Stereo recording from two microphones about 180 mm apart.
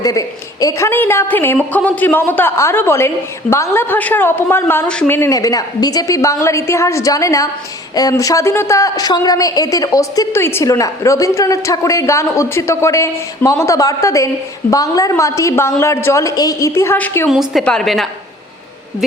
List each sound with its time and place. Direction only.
0.0 s speech: 20° left (ahead or behind)
17.2 s a woman's voice: centre (ahead or behind)